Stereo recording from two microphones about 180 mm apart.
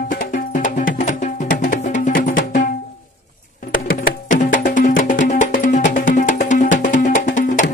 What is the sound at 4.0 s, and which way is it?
Music, 45° left (ahead or behind).